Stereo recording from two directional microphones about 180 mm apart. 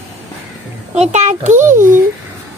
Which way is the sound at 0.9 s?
35° right (ahead or behind).